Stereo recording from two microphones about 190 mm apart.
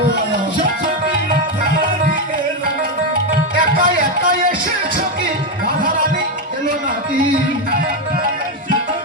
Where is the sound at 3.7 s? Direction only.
45° right (ahead or behind).